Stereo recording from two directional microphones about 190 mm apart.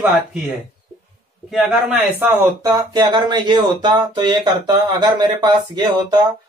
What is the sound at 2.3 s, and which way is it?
Speech, 15° right (ahead or behind).